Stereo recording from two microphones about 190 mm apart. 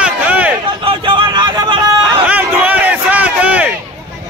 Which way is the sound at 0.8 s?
25° right (ahead or behind).